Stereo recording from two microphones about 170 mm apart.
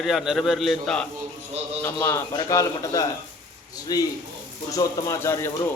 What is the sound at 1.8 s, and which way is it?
A man's voice, 15° left (ahead or behind).